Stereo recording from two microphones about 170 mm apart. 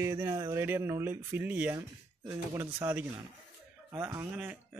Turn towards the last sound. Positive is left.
turn(degrees=-10)  # may be behind; listen again after turning